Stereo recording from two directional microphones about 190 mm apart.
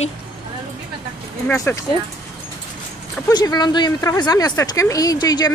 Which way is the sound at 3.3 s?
20° left (ahead or behind).